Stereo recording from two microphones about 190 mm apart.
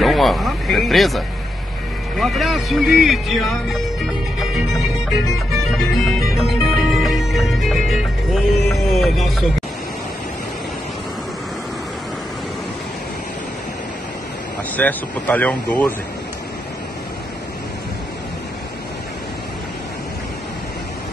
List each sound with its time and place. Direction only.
0.0 s speech: centre (ahead or behind)
4.4 s music: centre (ahead or behind)
14.8 s speech: 10° left (ahead or behind)